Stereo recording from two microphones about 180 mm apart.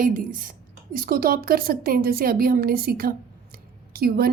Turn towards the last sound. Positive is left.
turn(degrees=-55)  # may be behind; listen again after turning